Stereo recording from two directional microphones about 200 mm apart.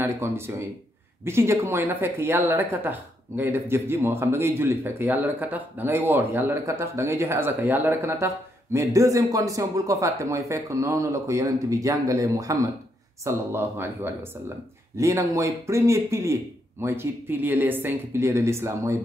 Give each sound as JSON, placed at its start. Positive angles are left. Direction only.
{"t": 0.0, "sound": "speech", "side_deg": -10}